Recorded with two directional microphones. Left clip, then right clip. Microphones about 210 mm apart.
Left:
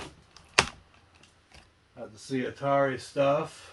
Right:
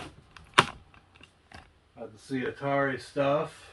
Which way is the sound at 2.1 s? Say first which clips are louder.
Even; 30° left (ahead or behind).